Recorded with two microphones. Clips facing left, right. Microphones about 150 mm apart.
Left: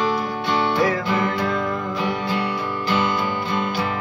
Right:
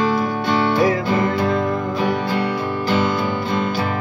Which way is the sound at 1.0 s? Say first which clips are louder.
Right 3 dB; 35° right (ahead or behind).